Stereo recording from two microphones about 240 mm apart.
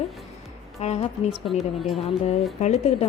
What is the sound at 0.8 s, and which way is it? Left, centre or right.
Speech, left.